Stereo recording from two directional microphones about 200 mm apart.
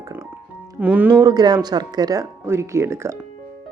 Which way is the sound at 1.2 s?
20° right (ahead or behind).